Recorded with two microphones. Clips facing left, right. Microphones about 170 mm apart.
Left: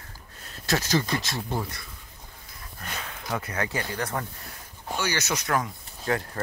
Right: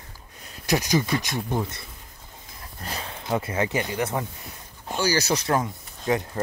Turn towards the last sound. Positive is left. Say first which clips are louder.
# right 3 dB
turn(degrees=-20)  # may be behind; listen again after turning